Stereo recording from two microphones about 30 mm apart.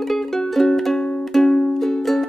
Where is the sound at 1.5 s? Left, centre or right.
Left.